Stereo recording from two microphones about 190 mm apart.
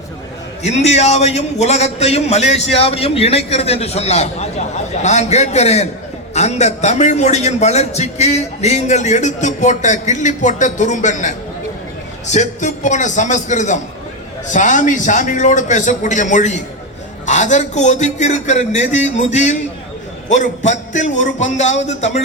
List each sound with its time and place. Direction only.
0.6 s a man's voice: 35° left (ahead or behind)